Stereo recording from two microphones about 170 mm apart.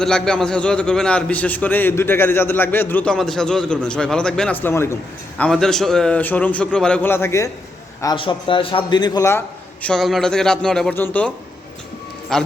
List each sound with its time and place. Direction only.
0.0 s a man's voice: 5° left (ahead or behind)
5.4 s a man's voice: 5° left (ahead or behind)
8.0 s a man's voice: 30° left (ahead or behind)
9.8 s a man's voice: centre (ahead or behind)
12.3 s a man's voice: 5° left (ahead or behind)